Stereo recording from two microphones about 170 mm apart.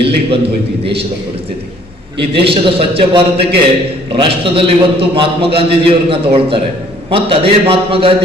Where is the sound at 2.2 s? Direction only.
35° right (ahead or behind).